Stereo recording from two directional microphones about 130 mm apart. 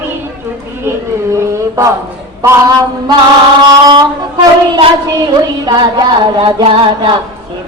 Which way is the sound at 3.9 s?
35° right (ahead or behind).